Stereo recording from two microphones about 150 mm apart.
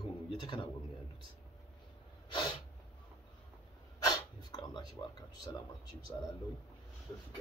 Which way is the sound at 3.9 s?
25° left (ahead or behind).